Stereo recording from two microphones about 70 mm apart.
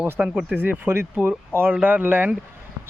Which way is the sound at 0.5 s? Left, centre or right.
Right.